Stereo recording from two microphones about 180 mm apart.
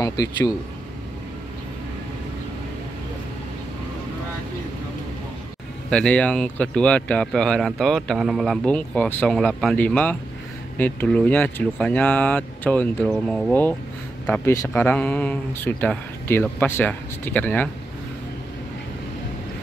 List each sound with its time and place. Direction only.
0.0 s speech: 20° left (ahead or behind)
5.9 s speech: 5° left (ahead or behind)